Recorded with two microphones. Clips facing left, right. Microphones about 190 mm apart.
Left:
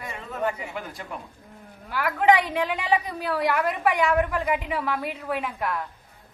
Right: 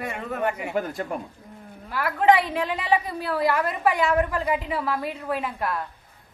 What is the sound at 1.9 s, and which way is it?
A woman's voice, centre (ahead or behind).